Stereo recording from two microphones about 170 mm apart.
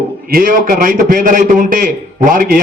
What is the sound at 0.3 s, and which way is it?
A man's voice, 60° right (ahead or behind).